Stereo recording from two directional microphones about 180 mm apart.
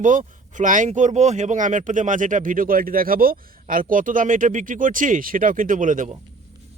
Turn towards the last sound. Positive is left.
turn(degrees=-45)  # may be behind; listen again after turning